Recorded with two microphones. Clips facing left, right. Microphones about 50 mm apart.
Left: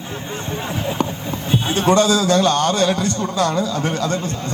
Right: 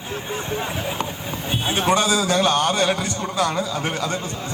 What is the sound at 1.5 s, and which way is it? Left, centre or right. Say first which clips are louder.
A man's voice: left 3 dB; centre.